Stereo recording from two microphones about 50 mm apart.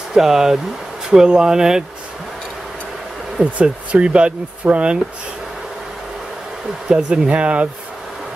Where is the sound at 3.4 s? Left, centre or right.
Right.